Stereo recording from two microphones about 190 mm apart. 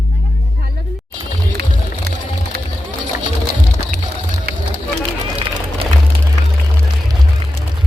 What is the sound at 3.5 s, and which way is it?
Music, 50° right (ahead or behind).